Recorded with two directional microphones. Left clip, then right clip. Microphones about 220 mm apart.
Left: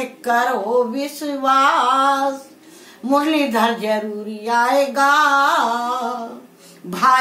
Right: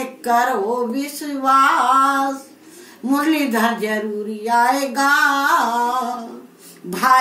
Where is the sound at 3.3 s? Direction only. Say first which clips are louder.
Left 1 dB; 10° left (ahead or behind).